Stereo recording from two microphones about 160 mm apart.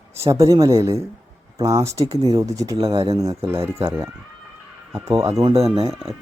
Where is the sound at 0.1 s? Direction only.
20° right (ahead or behind).